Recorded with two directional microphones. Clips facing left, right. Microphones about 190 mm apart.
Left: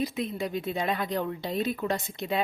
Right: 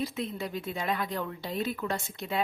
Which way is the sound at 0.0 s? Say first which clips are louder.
Left 3 dB; 15° left (ahead or behind).